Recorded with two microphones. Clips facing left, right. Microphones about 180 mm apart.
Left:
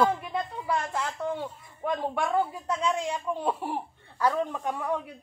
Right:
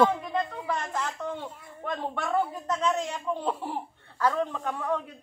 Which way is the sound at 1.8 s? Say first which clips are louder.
Left 3 dB; 10° left (ahead or behind).